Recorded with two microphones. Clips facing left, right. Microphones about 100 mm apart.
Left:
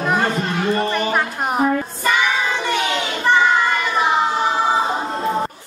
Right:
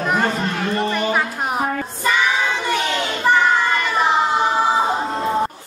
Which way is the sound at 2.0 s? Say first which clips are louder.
Even; 5° left (ahead or behind).